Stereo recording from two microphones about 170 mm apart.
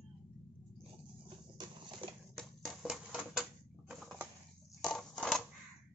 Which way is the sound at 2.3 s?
Centre (ahead or behind).